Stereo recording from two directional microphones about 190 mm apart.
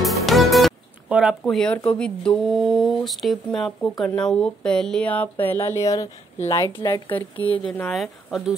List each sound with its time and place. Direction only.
0.0 s music: centre (ahead or behind)
1.4 s speech: 5° left (ahead or behind)